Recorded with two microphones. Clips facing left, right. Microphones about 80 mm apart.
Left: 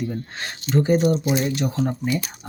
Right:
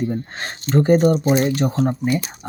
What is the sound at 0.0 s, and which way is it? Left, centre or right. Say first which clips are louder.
Speech: right 4 dB; right.